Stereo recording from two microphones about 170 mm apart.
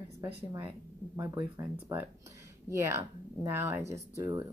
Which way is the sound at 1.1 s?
15° right (ahead or behind).